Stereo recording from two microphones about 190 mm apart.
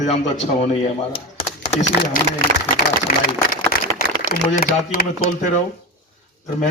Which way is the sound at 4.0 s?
50° left (ahead or behind).